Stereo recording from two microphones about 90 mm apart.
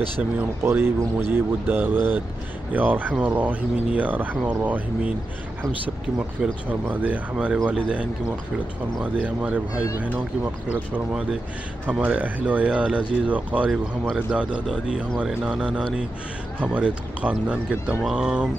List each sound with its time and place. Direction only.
0.6 s speech: 25° right (ahead or behind)
6.1 s speech: 15° right (ahead or behind)